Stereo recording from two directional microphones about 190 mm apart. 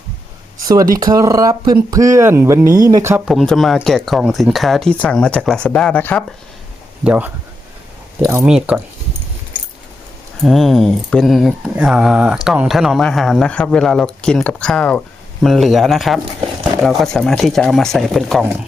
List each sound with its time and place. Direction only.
0.9 s speech: 20° right (ahead or behind)
3.2 s speech: centre (ahead or behind)
7.0 s speech: 5° right (ahead or behind)
8.4 s speech: 5° right (ahead or behind)
10.4 s speech: centre (ahead or behind)